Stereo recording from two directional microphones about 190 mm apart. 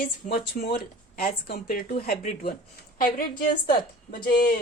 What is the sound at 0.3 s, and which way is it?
A woman's voice, 55° left (ahead or behind).